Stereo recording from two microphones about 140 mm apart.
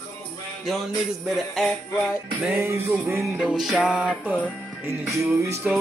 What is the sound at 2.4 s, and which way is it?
Music, 15° right (ahead or behind).